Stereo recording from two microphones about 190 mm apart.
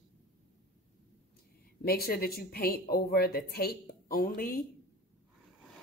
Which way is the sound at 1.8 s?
55° left (ahead or behind).